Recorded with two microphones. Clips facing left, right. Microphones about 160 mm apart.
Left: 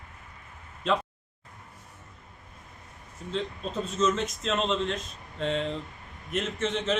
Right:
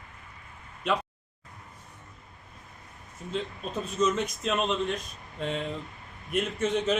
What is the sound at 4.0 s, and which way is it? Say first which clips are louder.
A man's voice: even; 10° right (ahead or behind).